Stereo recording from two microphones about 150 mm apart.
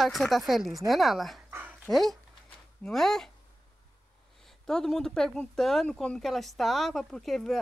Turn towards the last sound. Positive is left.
turn(degrees=0)  # may be behind; listen again after turning